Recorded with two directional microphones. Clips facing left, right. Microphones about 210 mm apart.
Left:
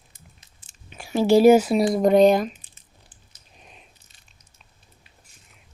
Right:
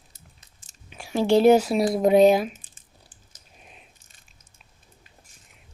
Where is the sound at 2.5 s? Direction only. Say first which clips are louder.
Left 1 dB; 50° right (ahead or behind).